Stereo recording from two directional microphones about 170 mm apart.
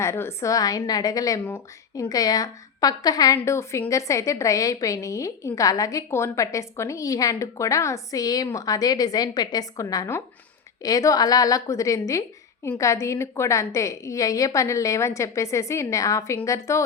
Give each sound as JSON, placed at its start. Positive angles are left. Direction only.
{"t": 0.0, "sound": "a woman's voice", "side_deg": 15}